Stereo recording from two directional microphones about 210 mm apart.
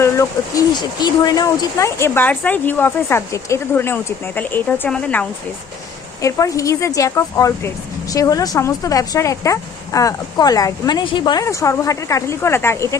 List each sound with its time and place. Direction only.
0.0 s speech: 15° left (ahead or behind)
6.2 s speech: 15° left (ahead or behind)